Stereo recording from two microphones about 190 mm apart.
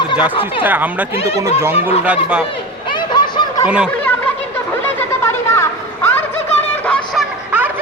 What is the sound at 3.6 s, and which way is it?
Turkey, 5° right (ahead or behind).